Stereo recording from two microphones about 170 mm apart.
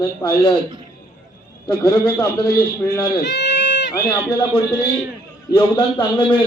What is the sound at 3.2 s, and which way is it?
Goat, 85° left.